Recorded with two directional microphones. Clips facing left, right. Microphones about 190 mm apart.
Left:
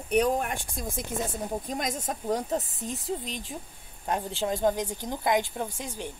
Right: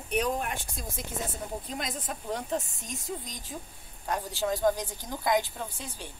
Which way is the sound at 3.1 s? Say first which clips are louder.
Left 3 dB; 30° left (ahead or behind).